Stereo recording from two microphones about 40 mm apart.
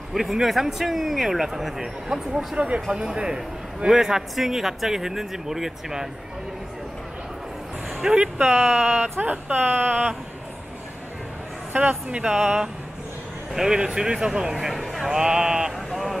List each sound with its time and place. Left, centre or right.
0.1 s a man's voice: centre
2.5 s a man's voice: right; by 6.0 s centre
8.0 s speech: right
8.4 s speech: right
9.6 s speech: right
11.7 s speech: right
12.1 s a man's voice: right
14.7 s speech: centre
15.0 s a man's voice: centre
15.9 s vehicle: centre